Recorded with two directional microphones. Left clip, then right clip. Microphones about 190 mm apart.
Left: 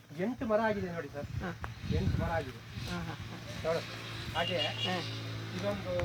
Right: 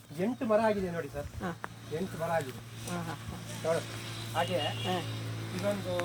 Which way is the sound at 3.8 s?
35° left (ahead or behind).